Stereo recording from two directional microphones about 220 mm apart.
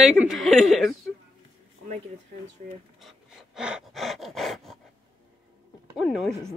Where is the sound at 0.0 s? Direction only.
Centre (ahead or behind).